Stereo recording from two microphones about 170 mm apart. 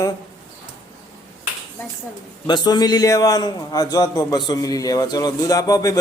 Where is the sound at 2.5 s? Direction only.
25° left (ahead or behind).